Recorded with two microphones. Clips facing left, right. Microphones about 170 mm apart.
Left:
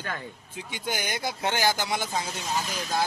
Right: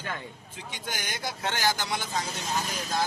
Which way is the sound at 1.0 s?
15° left (ahead or behind).